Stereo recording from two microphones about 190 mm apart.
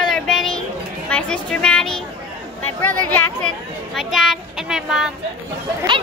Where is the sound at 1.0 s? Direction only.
5° left (ahead or behind).